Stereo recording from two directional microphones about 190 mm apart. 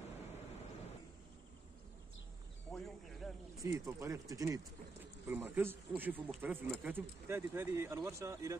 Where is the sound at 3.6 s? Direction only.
15° right (ahead or behind).